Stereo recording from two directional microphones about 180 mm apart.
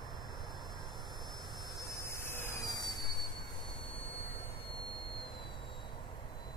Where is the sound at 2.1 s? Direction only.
10° left (ahead or behind).